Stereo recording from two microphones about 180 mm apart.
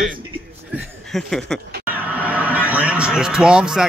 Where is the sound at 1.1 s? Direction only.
Centre (ahead or behind).